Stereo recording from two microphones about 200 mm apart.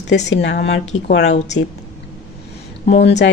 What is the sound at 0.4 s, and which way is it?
Speech, 60° left (ahead or behind).